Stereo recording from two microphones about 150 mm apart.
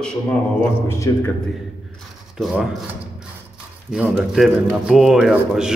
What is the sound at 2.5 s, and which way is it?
Speech, 10° right (ahead or behind).